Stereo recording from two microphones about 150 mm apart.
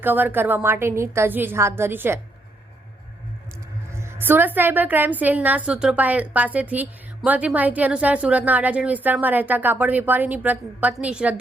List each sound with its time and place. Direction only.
0.0 s a woman's voice: 15° right (ahead or behind)
3.9 s a woman's voice: 15° right (ahead or behind)